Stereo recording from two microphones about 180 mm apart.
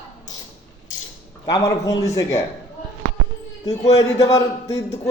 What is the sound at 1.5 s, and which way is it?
Speech, 20° left (ahead or behind).